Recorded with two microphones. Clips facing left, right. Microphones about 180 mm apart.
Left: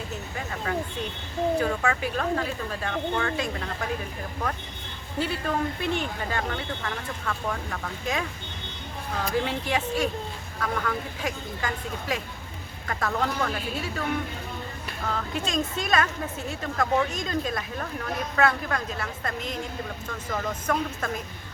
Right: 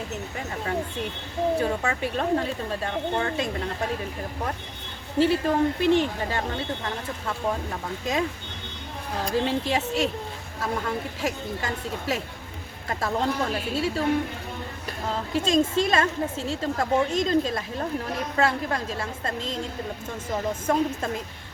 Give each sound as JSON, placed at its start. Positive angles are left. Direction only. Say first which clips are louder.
{"t": 1.5, "sound": "speech", "louder": "even", "side_deg": -25}
{"t": 5.2, "sound": "speech", "louder": "right 7 dB", "side_deg": -25}
{"t": 9.3, "sound": "speech", "louder": "right 3 dB", "side_deg": -25}
{"t": 15.1, "sound": "speech", "louder": "right 6 dB", "side_deg": -25}